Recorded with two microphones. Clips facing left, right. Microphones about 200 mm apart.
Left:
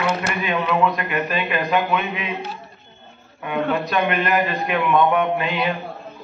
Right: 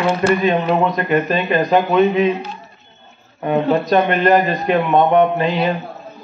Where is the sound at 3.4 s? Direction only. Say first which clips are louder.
Right 7 dB; 30° right (ahead or behind).